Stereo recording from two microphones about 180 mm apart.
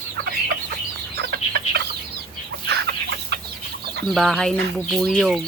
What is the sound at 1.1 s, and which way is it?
Chicken, 65° right (ahead or behind).